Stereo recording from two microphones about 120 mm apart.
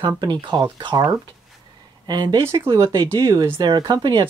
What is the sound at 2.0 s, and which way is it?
Speech, 40° right (ahead or behind).